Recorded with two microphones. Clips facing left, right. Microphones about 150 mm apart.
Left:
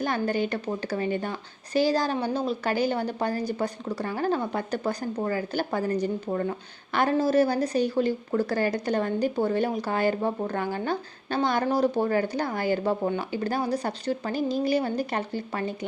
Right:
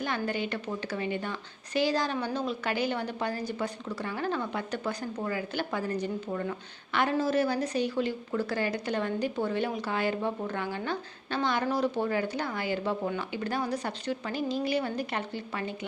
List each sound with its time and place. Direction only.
0.0 s speech: 40° left (ahead or behind)